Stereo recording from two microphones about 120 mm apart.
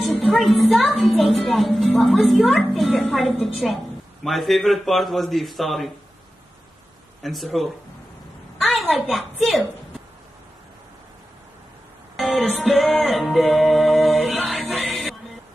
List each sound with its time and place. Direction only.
0.3 s a woman's voice: centre (ahead or behind)
7.2 s a woman's voice: centre (ahead or behind)
8.9 s a woman's voice: centre (ahead or behind)
12.2 s music: centre (ahead or behind)